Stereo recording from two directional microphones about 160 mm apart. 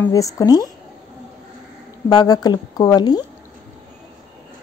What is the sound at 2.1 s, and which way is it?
A woman's voice, 25° left (ahead or behind).